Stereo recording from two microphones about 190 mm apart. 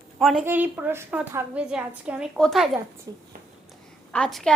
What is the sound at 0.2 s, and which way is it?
A woman's voice, centre (ahead or behind).